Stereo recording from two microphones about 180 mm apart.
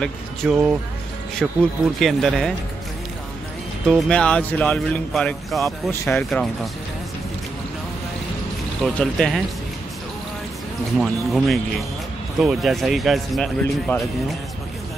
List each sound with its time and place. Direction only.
0.0 s speech: centre (ahead or behind)
3.9 s speech: 5° left (ahead or behind)
8.8 s speech: 5° left (ahead or behind)
11.0 s speech: centre (ahead or behind)